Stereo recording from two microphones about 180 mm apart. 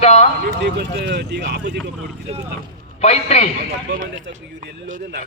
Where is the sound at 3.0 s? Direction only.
35° left (ahead or behind).